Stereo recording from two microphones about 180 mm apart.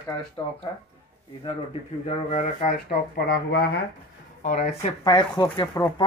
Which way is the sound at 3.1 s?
55° left (ahead or behind).